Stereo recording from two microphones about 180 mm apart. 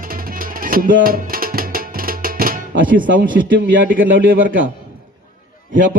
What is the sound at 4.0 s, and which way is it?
Speech, 50° right (ahead or behind).